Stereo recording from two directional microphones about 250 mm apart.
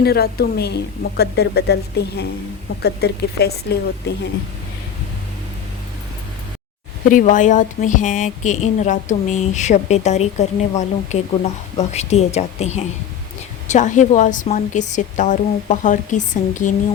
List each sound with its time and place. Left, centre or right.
0.0 s a woman's voice: left
7.1 s speech: left